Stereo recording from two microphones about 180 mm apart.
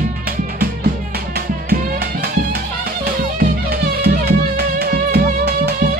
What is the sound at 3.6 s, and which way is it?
Music, 65° right (ahead or behind).